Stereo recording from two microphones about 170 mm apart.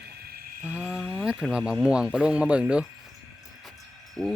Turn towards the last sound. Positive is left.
turn(degrees=5)  # may be behind; listen again after turning